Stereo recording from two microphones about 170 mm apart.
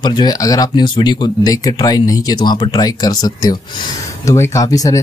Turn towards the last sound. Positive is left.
turn(degrees=20)  # may be behind; listen again after turning